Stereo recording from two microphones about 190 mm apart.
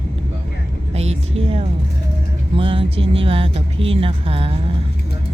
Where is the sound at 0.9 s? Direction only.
30° right (ahead or behind).